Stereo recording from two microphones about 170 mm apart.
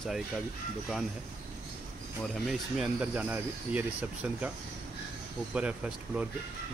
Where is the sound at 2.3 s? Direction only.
5° right (ahead or behind).